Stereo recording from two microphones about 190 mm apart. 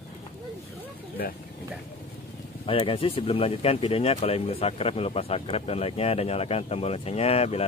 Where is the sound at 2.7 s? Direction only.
30° left (ahead or behind).